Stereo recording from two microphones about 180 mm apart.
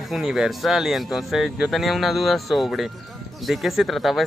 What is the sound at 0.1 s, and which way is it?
Speech, centre (ahead or behind).